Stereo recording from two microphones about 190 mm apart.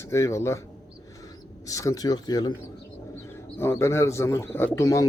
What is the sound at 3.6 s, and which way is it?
A man's voice, 15° left (ahead or behind).